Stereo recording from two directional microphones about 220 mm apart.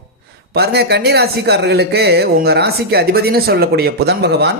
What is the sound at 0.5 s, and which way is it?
Speech, 45° right (ahead or behind).